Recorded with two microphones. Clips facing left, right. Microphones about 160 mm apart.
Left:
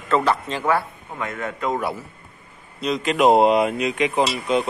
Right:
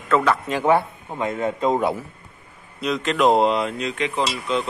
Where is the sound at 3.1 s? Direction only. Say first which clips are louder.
Left 3 dB; 15° left (ahead or behind).